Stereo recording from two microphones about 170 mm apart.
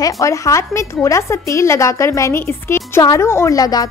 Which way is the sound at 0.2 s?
20° left (ahead or behind).